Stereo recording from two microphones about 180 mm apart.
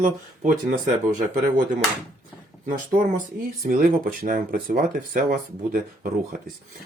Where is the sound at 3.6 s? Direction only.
50° right (ahead or behind).